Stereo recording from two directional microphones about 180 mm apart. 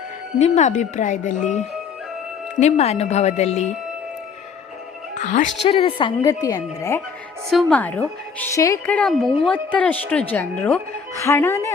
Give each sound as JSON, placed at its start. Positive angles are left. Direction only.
{"t": 0.3, "sound": "speech", "side_deg": 40}
{"t": 5.1, "sound": "a woman's voice", "side_deg": 45}
{"t": 5.6, "sound": "a woman's voice", "side_deg": 30}
{"t": 7.5, "sound": "a woman's voice", "side_deg": 5}